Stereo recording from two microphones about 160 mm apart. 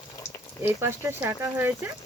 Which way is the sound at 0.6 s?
15° right (ahead or behind).